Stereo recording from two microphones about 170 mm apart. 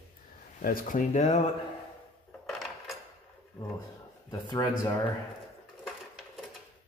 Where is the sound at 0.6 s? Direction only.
55° left (ahead or behind).